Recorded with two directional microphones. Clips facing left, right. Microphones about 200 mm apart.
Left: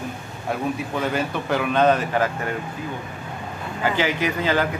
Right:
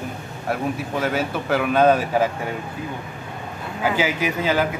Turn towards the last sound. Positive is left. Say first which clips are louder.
# right 1 dB
turn(degrees=-10)  # may be behind; listen again after turning